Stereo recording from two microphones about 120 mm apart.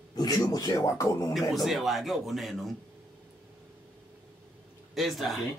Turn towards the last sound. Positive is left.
turn(degrees=0)  # may be behind; listen again after turning